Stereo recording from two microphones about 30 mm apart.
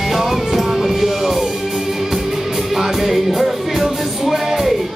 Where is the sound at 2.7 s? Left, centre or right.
Centre.